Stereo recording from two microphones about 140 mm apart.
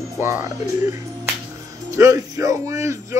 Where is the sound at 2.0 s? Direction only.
25° right (ahead or behind).